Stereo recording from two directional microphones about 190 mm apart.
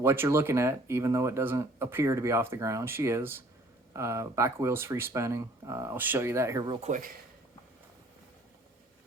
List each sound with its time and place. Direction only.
0.0 s speech: 15° right (ahead or behind)
6.8 s speech: 40° right (ahead or behind)